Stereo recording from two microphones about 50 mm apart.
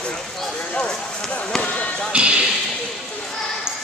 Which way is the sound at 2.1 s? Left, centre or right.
Right.